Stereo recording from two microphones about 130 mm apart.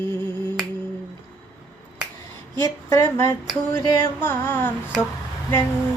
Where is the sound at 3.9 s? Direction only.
15° left (ahead or behind).